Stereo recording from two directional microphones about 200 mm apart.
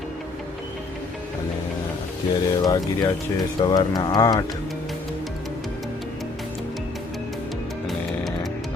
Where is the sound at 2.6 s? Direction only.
15° left (ahead or behind).